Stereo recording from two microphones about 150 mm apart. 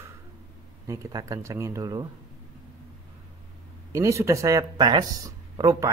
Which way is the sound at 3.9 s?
20° right (ahead or behind).